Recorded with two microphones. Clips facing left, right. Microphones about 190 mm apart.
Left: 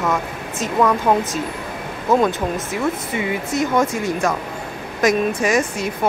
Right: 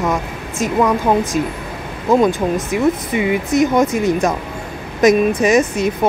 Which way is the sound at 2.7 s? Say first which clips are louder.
Right 6 dB; 15° right (ahead or behind).